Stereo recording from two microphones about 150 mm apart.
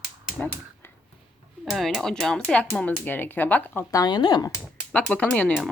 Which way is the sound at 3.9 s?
25° left (ahead or behind).